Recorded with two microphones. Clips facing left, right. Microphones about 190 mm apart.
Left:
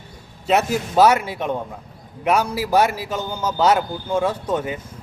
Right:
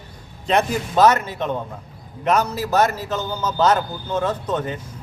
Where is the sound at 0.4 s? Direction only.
5° left (ahead or behind).